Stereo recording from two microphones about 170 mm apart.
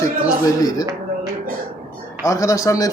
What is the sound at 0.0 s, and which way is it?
Speech, 20° left (ahead or behind).